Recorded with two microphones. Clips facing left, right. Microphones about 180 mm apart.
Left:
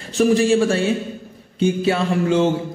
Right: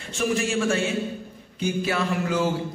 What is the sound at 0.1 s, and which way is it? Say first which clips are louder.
A man's voice: left 9 dB; 35° left (ahead or behind).